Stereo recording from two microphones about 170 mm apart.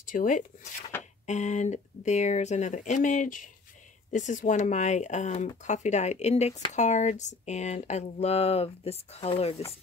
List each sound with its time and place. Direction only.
0.0 s speech: 50° left (ahead or behind); by 9.6 s 35° left (ahead or behind)